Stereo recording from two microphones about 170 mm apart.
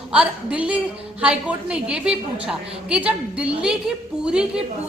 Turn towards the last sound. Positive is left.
turn(degrees=-5)  # may be behind; listen again after turning